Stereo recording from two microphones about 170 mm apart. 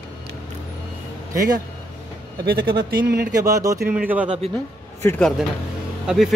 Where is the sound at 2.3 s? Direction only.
65° right (ahead or behind).